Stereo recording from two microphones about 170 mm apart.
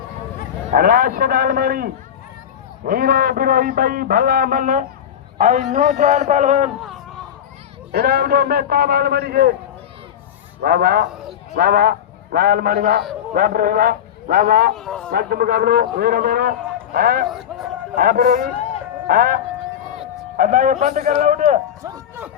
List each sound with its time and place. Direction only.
0.7 s a man's voice: 55° right (ahead or behind)
7.9 s a man's voice: 65° right (ahead or behind)
10.6 s a man's voice: 65° right (ahead or behind)
11.1 s a sound: 5° right (ahead or behind)
11.5 s a man's voice: 60° right (ahead or behind)
14.8 s speech: 5° left (ahead or behind)
15.1 s a man's voice: 60° right (ahead or behind)
17.2 s speech: centre (ahead or behind)
17.9 s a man's voice: 55° right (ahead or behind)